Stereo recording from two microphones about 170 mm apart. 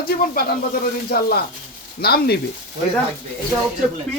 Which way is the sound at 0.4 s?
60° left (ahead or behind).